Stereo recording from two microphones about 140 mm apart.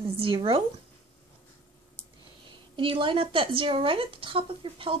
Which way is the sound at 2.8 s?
35° right (ahead or behind).